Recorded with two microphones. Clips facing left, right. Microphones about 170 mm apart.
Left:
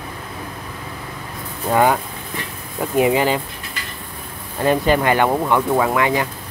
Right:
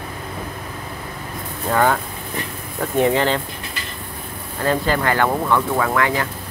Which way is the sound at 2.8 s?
10° left (ahead or behind).